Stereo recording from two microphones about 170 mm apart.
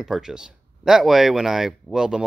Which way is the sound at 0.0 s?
5° right (ahead or behind).